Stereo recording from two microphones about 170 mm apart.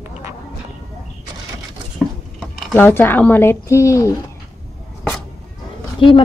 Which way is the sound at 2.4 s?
10° left (ahead or behind).